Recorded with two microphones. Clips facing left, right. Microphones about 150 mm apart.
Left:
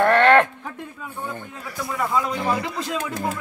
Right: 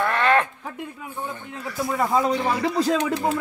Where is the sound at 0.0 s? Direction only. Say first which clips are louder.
Left 5 dB; 70° left (ahead or behind).